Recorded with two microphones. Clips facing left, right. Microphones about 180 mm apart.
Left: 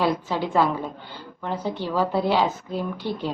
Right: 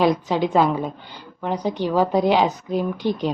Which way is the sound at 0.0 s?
15° right (ahead or behind).